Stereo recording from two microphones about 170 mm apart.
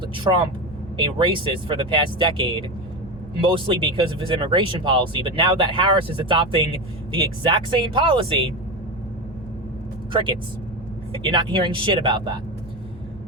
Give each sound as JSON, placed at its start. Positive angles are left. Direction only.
{"t": 0.0, "sound": "vehicle", "side_deg": -30}
{"t": 0.9, "sound": "speech", "side_deg": -30}
{"t": 10.1, "sound": "speech", "side_deg": -30}